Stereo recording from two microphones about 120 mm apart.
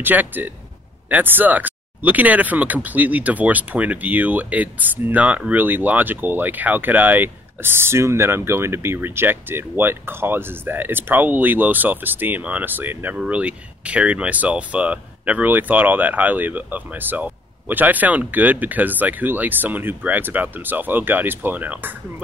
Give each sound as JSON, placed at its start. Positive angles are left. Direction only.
{"t": 0.0, "sound": "speech", "side_deg": -15}